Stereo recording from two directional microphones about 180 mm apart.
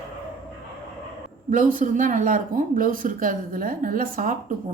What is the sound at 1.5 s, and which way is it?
A man's voice, 50° right (ahead or behind).